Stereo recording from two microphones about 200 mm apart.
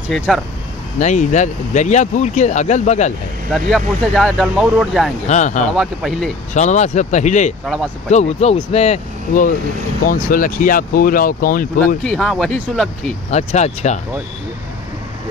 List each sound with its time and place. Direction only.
0.1 s speech: centre (ahead or behind)
0.9 s speech: 35° left (ahead or behind)
3.5 s speech: centre (ahead or behind)
5.3 s speech: 40° left (ahead or behind)
5.8 s speech: centre (ahead or behind)
6.5 s speech: 35° left (ahead or behind)
7.6 s speech: centre (ahead or behind)
8.1 s speech: 35° left (ahead or behind)
12.0 s speech: 5° left (ahead or behind)
13.3 s speech: 35° left (ahead or behind)